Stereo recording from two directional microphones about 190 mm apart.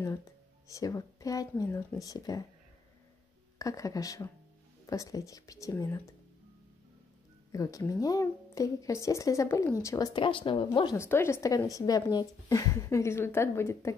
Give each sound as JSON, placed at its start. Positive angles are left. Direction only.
{"t": 0.7, "sound": "speech", "side_deg": 15}
{"t": 3.5, "sound": "a woman's voice", "side_deg": 15}
{"t": 7.5, "sound": "a woman's voice", "side_deg": 15}